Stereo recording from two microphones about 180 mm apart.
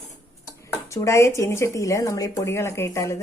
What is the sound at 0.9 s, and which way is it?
Speech, 15° left (ahead or behind).